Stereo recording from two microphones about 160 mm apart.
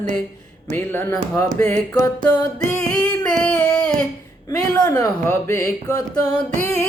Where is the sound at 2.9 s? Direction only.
5° left (ahead or behind).